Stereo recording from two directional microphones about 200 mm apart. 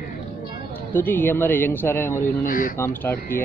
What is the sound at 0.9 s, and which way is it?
A man's voice, 10° left (ahead or behind).